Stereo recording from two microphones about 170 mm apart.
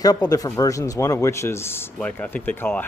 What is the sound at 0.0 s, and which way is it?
Speech, 20° left (ahead or behind).